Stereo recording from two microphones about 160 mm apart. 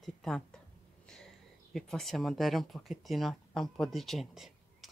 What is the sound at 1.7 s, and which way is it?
Speech, centre (ahead or behind).